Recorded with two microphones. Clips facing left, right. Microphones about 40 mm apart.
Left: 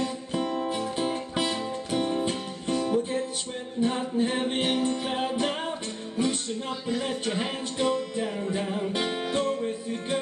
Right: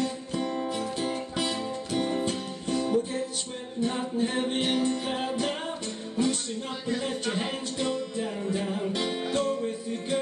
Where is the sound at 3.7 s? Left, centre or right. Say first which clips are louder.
Left 2 dB; centre.